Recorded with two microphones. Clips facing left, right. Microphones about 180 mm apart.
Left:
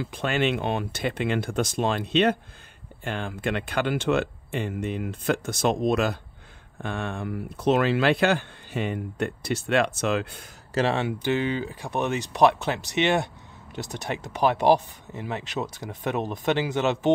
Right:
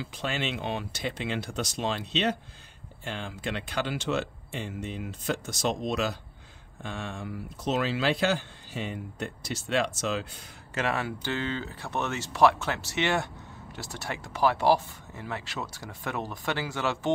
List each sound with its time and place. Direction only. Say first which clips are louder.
0.0 s speech: left 7 dB; 55° left (ahead or behind)
10.7 s speech: left 6 dB; 30° left (ahead or behind)